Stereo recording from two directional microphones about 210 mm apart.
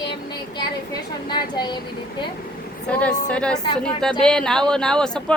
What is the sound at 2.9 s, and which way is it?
A woman's voice, 5° left (ahead or behind).